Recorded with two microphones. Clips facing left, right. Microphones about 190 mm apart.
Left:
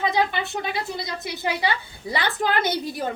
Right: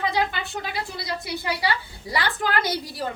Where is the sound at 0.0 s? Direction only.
20° left (ahead or behind).